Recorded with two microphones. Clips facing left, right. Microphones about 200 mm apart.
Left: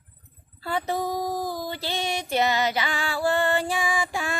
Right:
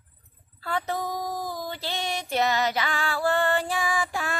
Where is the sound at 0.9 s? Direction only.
30° left (ahead or behind).